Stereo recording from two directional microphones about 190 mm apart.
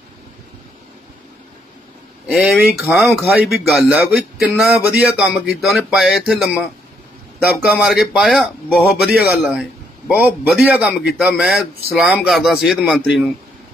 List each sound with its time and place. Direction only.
2.2 s a man's voice: centre (ahead or behind)